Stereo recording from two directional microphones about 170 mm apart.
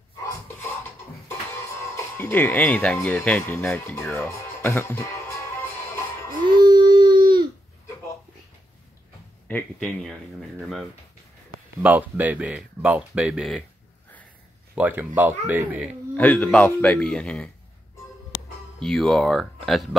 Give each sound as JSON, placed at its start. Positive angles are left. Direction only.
{"t": 2.1, "sound": "speech", "side_deg": 10}
{"t": 6.4, "sound": "baby cry", "side_deg": -25}
{"t": 9.5, "sound": "speech", "side_deg": 10}
{"t": 11.8, "sound": "speech", "side_deg": -10}
{"t": 14.8, "sound": "speech", "side_deg": -10}
{"t": 16.2, "sound": "speech", "side_deg": 10}
{"t": 18.8, "sound": "speech", "side_deg": 0}